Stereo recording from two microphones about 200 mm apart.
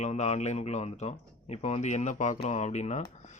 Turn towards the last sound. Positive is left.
turn(degrees=35)  # may be behind; listen again after turning